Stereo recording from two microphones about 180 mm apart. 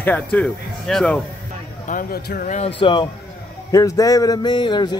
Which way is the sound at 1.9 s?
55° left (ahead or behind).